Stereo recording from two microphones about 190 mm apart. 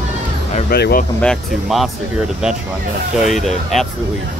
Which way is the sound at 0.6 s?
55° left (ahead or behind).